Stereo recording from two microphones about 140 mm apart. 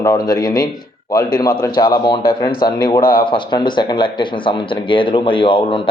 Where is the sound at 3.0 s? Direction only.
90° left.